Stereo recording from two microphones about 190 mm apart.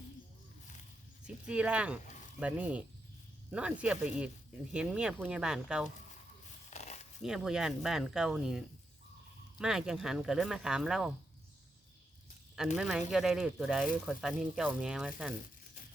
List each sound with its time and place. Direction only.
1.5 s speech: 5° right (ahead or behind)
6.7 s a sound: 35° left (ahead or behind)
7.2 s speech: 5° right (ahead or behind)
12.7 s speech: centre (ahead or behind)